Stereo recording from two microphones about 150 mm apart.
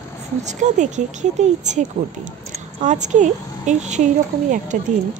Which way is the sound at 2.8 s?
55° right (ahead or behind).